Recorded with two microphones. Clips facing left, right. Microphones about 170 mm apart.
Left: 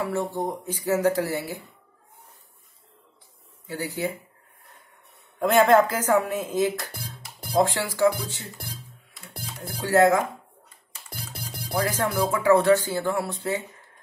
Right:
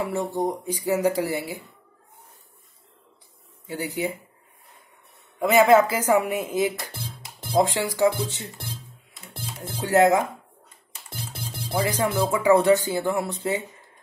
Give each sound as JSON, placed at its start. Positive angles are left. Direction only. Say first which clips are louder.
{"t": 0.0, "sound": "speech", "louder": "right 1 dB", "side_deg": -15}
{"t": 3.6, "sound": "speech", "louder": "right 1 dB", "side_deg": -20}
{"t": 5.4, "sound": "speech", "louder": "right 1 dB", "side_deg": -5}
{"t": 7.2, "sound": "music", "louder": "right 1 dB", "side_deg": 10}
{"t": 7.5, "sound": "speech", "louder": "right 1 dB", "side_deg": -20}
{"t": 9.8, "sound": "speech", "louder": "right 1 dB", "side_deg": -20}
{"t": 11.1, "sound": "music", "louder": "right 2 dB", "side_deg": 10}
{"t": 11.7, "sound": "speech", "louder": "right 1 dB", "side_deg": -10}